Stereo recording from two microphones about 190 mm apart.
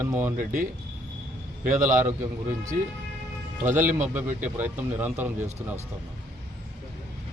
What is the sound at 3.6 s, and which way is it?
Speech, 10° right (ahead or behind).